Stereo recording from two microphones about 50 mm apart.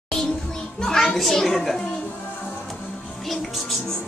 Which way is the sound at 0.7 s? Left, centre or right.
Centre.